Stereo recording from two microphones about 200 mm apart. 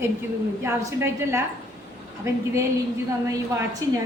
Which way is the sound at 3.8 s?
15° right (ahead or behind).